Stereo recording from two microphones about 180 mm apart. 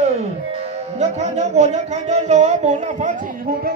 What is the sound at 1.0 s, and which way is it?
Speech, 40° right (ahead or behind).